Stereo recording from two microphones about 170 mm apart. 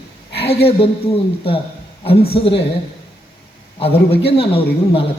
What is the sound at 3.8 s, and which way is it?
A man's voice, 35° left (ahead or behind).